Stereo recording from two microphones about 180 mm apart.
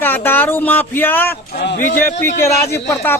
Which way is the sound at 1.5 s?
60° left (ahead or behind).